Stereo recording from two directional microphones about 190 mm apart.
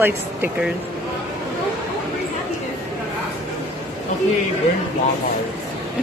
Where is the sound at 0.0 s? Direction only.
5° right (ahead or behind).